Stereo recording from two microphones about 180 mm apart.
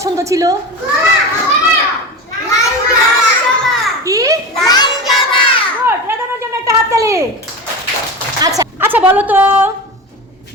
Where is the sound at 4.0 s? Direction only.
20° right (ahead or behind).